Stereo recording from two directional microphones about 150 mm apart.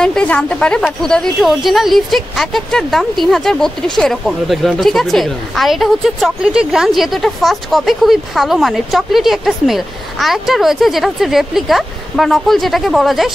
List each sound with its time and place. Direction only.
0.0 s a woman's voice: 5° left (ahead or behind)